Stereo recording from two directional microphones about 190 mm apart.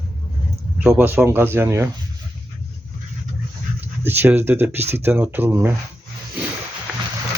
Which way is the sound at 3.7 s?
10° right (ahead or behind).